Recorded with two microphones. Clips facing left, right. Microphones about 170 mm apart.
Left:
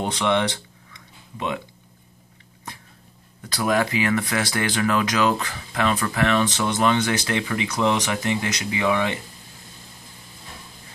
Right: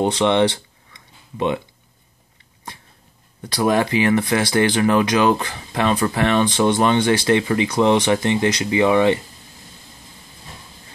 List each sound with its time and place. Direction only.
0.0 s speech: 25° right (ahead or behind)
3.4 s speech: 30° right (ahead or behind)